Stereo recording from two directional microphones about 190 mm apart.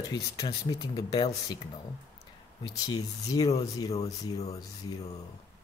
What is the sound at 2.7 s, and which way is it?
Speech, 20° left (ahead or behind).